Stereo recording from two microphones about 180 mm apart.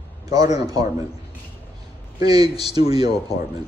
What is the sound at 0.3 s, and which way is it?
Speech, 20° right (ahead or behind).